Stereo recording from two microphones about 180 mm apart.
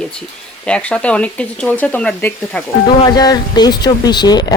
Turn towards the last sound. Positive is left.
turn(degrees=25)  # may be behind; listen again after turning